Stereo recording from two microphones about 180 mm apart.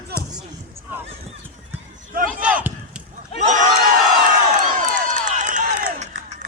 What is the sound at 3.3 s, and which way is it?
Crowd, 40° right (ahead or behind).